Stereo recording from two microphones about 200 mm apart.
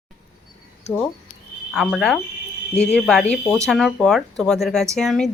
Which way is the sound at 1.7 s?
Centre (ahead or behind).